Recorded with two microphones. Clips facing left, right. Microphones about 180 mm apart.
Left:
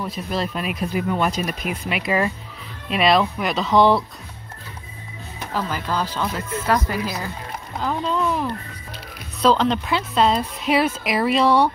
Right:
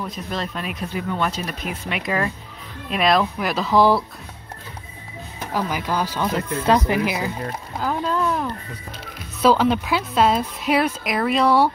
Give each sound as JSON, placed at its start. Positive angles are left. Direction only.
{"t": 0.0, "sound": "a woman's voice", "side_deg": 5}
{"t": 5.5, "sound": "speech", "side_deg": -10}
{"t": 7.8, "sound": "a woman's voice", "side_deg": -5}